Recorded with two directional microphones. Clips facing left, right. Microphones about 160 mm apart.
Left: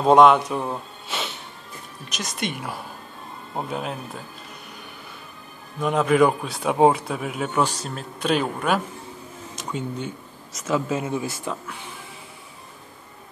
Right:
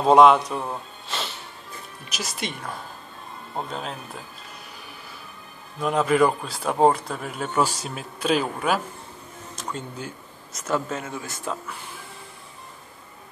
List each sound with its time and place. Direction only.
0.0 s speech: centre (ahead or behind)
5.8 s speech: centre (ahead or behind)
11.0 s speech: 20° left (ahead or behind)
11.3 s speech: centre (ahead or behind)